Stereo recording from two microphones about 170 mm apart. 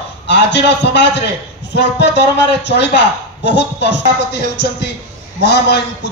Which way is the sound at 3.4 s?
90° left.